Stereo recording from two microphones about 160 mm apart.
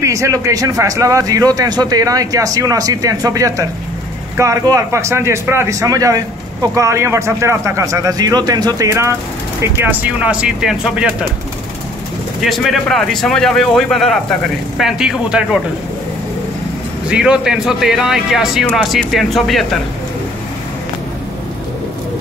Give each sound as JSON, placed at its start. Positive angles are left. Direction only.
{"t": 0.0, "sound": "a man's voice", "side_deg": -20}
{"t": 12.4, "sound": "a man's voice", "side_deg": 0}
{"t": 17.1, "sound": "a man's voice", "side_deg": -5}